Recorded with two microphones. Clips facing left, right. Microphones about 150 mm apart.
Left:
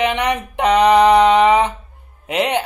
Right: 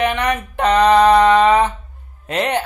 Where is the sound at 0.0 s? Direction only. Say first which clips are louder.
Even; 15° left (ahead or behind).